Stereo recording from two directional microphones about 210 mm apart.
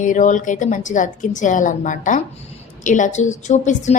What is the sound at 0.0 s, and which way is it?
A woman's voice, 35° left (ahead or behind).